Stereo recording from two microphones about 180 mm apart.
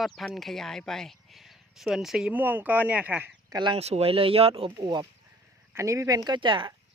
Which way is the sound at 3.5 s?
25° right (ahead or behind).